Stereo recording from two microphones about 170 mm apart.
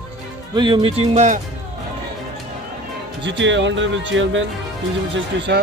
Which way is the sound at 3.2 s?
90° right.